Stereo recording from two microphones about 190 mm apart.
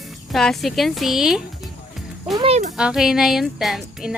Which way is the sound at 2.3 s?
35° right (ahead or behind).